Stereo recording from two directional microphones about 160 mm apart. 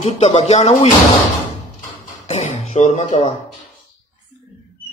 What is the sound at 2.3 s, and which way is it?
Speech, 40° left (ahead or behind).